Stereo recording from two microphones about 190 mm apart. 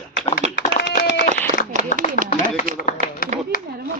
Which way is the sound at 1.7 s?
40° right (ahead or behind).